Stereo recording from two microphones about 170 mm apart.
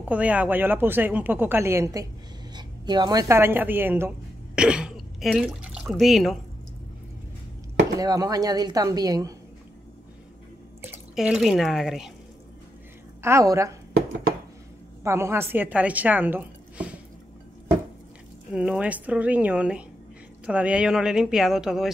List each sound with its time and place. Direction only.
0.0 s a woman's voice: 10° right (ahead or behind)
8.0 s speech: 20° right (ahead or behind)
11.1 s speech: centre (ahead or behind)
13.2 s speech: 20° right (ahead or behind)
15.0 s a woman's voice: 15° right (ahead or behind)
18.5 s speech: 5° right (ahead or behind)